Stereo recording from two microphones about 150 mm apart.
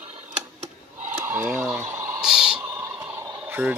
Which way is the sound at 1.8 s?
15° right (ahead or behind).